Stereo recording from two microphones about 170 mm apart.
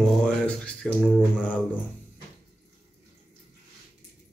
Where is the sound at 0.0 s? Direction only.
5° left (ahead or behind).